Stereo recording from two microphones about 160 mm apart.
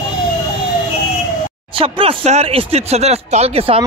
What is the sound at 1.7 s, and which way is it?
Speech, 35° right (ahead or behind).